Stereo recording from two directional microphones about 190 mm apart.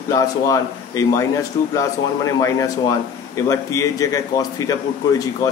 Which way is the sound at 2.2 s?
15° left (ahead or behind).